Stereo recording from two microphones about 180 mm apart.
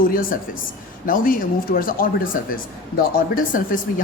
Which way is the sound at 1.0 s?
50° left (ahead or behind).